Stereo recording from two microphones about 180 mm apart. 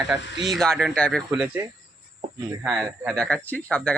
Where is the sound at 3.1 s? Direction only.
5° left (ahead or behind).